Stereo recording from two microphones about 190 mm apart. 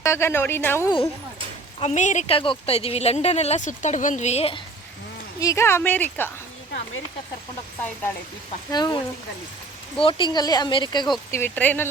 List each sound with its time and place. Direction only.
0.0 s a woman's voice: 15° left (ahead or behind)
1.8 s speech: 40° left (ahead or behind)
5.4 s a woman's voice: 15° left (ahead or behind)
8.7 s speech: 20° left (ahead or behind)
10.0 s speech: 25° left (ahead or behind)
11.3 s a woman's voice: 10° left (ahead or behind)